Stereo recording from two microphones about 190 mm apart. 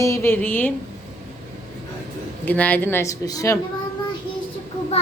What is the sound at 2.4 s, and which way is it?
Speech, 10° left (ahead or behind).